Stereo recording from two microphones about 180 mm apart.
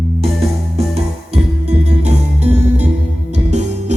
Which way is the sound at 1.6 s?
35° right (ahead or behind).